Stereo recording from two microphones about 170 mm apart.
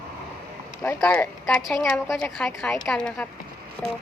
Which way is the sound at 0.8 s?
10° left (ahead or behind).